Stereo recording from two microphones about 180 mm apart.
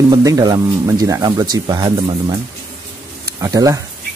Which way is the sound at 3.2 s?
20° right (ahead or behind).